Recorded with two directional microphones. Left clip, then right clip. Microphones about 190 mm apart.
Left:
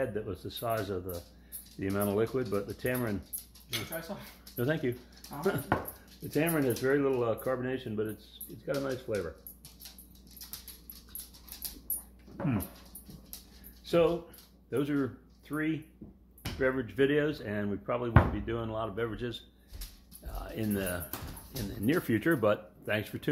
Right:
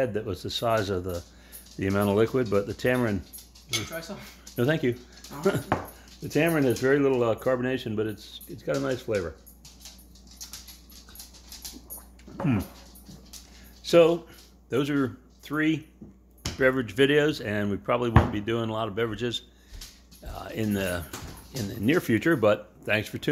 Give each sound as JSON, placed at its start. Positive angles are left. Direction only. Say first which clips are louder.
{"t": 0.0, "sound": "speech", "louder": "right 6 dB", "side_deg": -50}
{"t": 4.6, "sound": "speech", "louder": "right 6 dB", "side_deg": -55}
{"t": 6.2, "sound": "speech", "louder": "right 6 dB", "side_deg": -55}
{"t": 10.4, "sound": "dog", "louder": "right 6 dB", "side_deg": 0}
{"t": 13.8, "sound": "speech", "louder": "right 8 dB", "side_deg": -50}
{"t": 20.2, "sound": "music", "louder": "right 5 dB", "side_deg": -30}
{"t": 21.6, "sound": "speech", "louder": "right 6 dB", "side_deg": -25}